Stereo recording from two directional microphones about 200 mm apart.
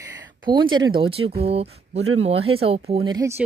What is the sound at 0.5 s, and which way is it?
Speech, 20° right (ahead or behind).